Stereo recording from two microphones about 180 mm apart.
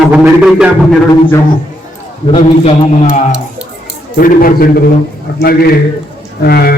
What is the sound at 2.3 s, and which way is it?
Speech, 35° left (ahead or behind).